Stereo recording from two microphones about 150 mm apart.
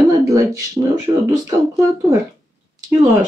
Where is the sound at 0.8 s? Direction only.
20° right (ahead or behind).